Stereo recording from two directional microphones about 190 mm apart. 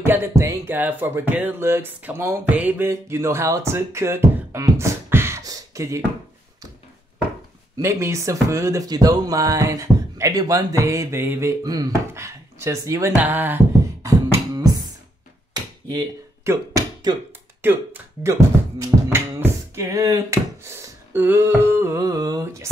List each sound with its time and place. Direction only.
0.0 s speech: 10° right (ahead or behind)
7.8 s speech: 15° right (ahead or behind)
14.0 s beatboxing: 20° right (ahead or behind)
15.5 s a sound: 20° right (ahead or behind)
17.6 s speech: 10° right (ahead or behind)
18.8 s a sound: 15° right (ahead or behind)